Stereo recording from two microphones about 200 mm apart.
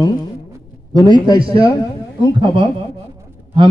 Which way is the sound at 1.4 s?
25° right (ahead or behind).